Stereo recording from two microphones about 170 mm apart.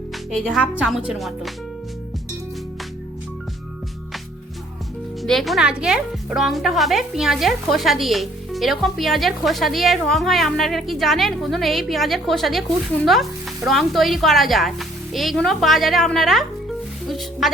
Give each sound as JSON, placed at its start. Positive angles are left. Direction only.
{"t": 0.3, "sound": "a woman's voice", "side_deg": 0}
{"t": 5.2, "sound": "a woman's voice", "side_deg": 0}